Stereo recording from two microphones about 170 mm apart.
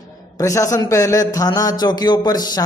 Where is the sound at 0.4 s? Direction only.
20° left (ahead or behind).